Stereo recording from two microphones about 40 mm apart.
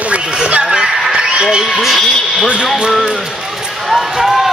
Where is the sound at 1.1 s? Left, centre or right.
Right.